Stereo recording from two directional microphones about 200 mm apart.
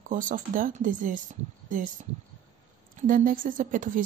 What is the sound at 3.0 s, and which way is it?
A woman's voice, 45° right (ahead or behind).